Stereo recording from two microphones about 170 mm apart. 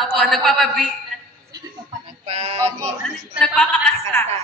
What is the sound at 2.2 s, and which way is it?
Music, 35° right (ahead or behind).